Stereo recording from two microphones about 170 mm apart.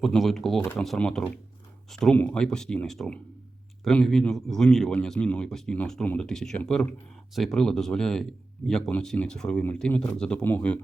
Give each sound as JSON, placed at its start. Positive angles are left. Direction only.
{"t": 0.0, "sound": "speech", "side_deg": 0}